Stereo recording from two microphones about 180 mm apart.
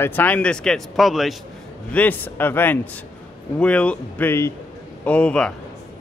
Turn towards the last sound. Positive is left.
turn(degrees=5)  # may be behind; listen again after turning